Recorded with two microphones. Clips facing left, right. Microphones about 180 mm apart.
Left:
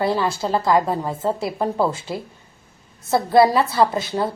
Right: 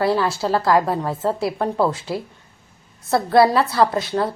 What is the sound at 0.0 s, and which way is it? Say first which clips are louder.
A woman's voice: right 1 dB; centre (ahead or behind).